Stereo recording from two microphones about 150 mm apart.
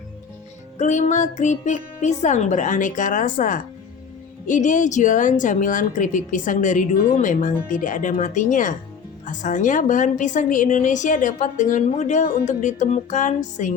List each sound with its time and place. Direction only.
0.8 s a woman's voice: 55° left (ahead or behind)
11.9 s music: 55° left (ahead or behind)